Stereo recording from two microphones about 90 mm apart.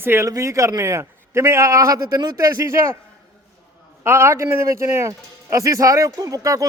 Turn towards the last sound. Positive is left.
turn(degrees=-40)  # may be behind; listen again after turning